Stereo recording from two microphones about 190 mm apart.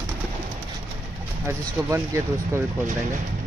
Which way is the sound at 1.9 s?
15° right (ahead or behind).